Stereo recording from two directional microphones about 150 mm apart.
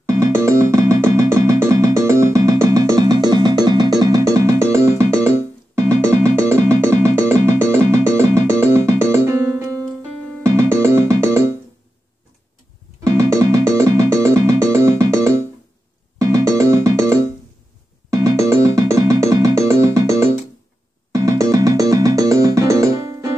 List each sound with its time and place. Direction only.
0.0 s music: 20° right (ahead or behind)
13.2 s music: 20° right (ahead or behind)
16.2 s music: 20° right (ahead or behind)